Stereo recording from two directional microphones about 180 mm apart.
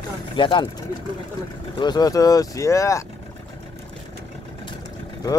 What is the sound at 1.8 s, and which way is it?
Speech, 25° left (ahead or behind).